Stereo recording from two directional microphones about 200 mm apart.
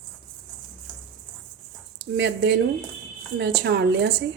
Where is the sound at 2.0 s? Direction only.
60° right (ahead or behind).